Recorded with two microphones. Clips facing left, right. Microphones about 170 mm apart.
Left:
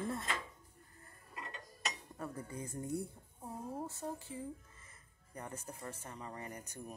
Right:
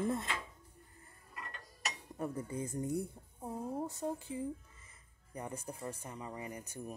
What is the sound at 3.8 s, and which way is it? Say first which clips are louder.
Speech: right 4 dB; 15° right (ahead or behind).